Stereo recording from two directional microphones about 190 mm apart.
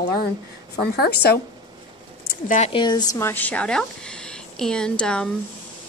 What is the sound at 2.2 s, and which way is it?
Speech, 40° left (ahead or behind).